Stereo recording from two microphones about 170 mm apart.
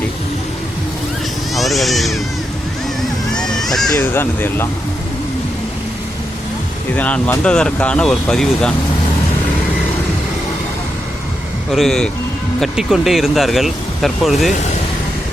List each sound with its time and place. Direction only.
1.5 s speech: centre (ahead or behind)
3.3 s a sound: 5° left (ahead or behind)
3.9 s speech: 15° left (ahead or behind)
6.9 s speech: 10° left (ahead or behind)
11.7 s speech: centre (ahead or behind)